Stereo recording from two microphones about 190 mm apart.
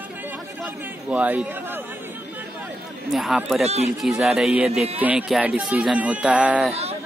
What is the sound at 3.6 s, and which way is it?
Speech, 35° right (ahead or behind).